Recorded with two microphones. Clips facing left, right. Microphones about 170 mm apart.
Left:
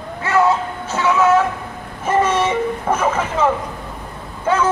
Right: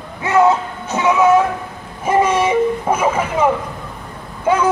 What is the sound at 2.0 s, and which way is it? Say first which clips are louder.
Vehicle: right 2 dB; 10° right (ahead or behind).